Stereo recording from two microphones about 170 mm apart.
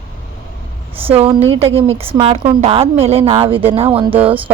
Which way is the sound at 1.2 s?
35° right (ahead or behind).